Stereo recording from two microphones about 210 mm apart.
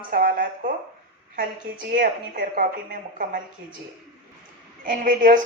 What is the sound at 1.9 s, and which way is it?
A woman's voice, 40° right (ahead or behind).